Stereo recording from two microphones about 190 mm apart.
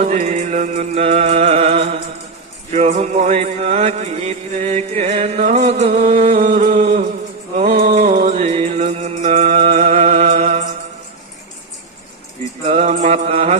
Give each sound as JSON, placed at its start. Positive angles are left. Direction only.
{"t": 0.0, "sound": "music", "side_deg": -40}
{"t": 2.7, "sound": "mantra", "side_deg": -40}
{"t": 7.9, "sound": "music", "side_deg": -40}
{"t": 12.6, "sound": "mantra", "side_deg": -40}